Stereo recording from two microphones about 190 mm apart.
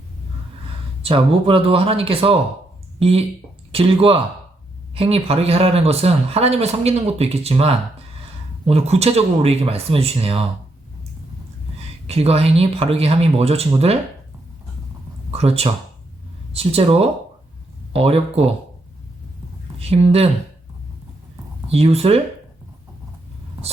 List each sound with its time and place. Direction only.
1.0 s speech: 30° right (ahead or behind)
12.0 s speech: 35° right (ahead or behind)
15.3 s speech: 30° right (ahead or behind)
19.9 s speech: 30° right (ahead or behind)
21.7 s speech: 30° right (ahead or behind)